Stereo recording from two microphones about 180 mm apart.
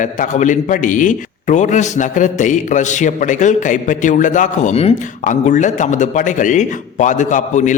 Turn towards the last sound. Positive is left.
turn(degrees=45)  # may be behind; listen again after turning